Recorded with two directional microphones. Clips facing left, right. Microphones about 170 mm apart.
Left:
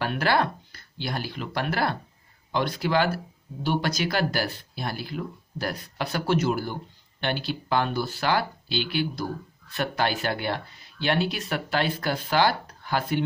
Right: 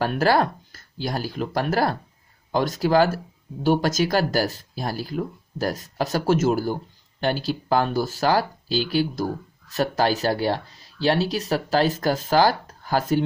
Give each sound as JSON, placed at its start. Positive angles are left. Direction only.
{"t": 0.0, "sound": "speech", "side_deg": -40}